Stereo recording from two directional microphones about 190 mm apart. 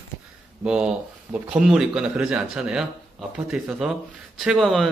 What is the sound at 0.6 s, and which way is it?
Speech, 5° right (ahead or behind).